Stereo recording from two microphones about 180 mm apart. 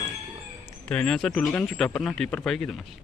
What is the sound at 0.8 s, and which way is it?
Speech, 5° left (ahead or behind).